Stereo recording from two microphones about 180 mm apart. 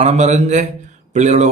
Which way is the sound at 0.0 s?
40° right (ahead or behind).